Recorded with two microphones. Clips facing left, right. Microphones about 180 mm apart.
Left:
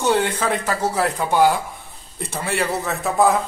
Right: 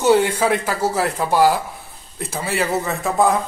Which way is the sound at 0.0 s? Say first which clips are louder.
Right 4 dB; 5° right (ahead or behind).